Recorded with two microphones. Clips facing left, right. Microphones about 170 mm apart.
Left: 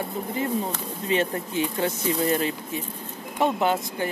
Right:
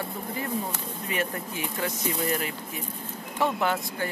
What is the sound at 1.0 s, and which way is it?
Speech, 25° left (ahead or behind).